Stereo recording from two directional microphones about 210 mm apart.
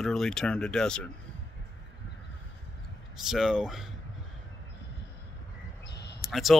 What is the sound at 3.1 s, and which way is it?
Speech, centre (ahead or behind).